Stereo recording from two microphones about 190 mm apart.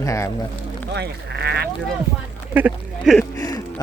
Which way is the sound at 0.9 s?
60° right (ahead or behind).